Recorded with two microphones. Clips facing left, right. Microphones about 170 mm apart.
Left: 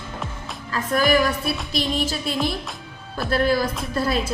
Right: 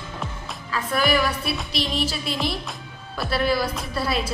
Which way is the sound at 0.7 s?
45° left (ahead or behind).